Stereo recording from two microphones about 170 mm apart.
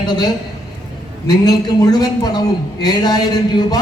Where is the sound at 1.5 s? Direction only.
25° left (ahead or behind).